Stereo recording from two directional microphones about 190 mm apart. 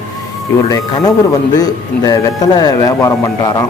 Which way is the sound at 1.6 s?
20° left (ahead or behind).